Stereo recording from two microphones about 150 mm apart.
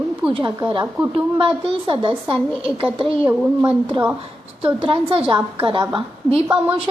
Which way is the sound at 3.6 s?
35° right (ahead or behind).